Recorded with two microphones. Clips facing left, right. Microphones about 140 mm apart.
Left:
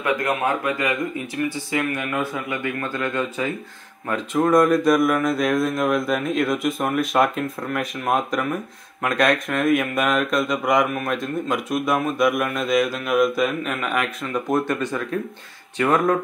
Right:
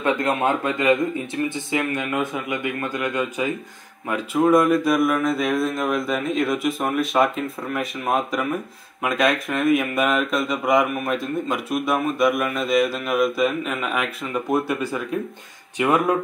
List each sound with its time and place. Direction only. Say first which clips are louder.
0.0 s speech: right 1 dB; 25° right (ahead or behind); by 16.2 s 10° right (ahead or behind)